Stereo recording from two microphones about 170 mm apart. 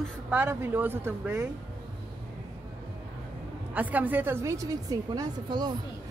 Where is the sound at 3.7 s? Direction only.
10° right (ahead or behind).